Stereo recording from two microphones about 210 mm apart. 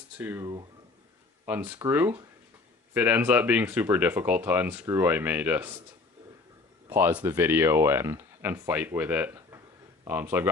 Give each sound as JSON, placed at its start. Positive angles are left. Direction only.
{"t": 0.2, "sound": "speech", "side_deg": -15}
{"t": 6.9, "sound": "speech", "side_deg": -10}